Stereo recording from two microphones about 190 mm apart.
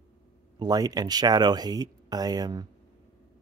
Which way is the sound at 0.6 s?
20° right (ahead or behind).